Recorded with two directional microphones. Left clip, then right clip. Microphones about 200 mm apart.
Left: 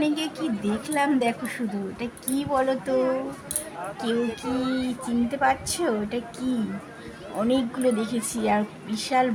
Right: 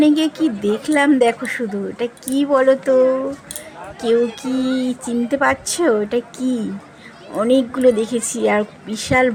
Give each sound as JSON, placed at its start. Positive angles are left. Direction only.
{"t": 0.0, "sound": "a woman's voice", "side_deg": -40}
{"t": 4.0, "sound": "a woman's voice", "side_deg": -35}